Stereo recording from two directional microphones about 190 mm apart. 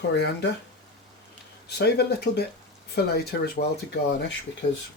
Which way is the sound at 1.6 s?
60° left (ahead or behind).